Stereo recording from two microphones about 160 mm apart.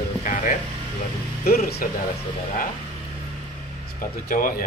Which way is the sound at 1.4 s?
70° left (ahead or behind).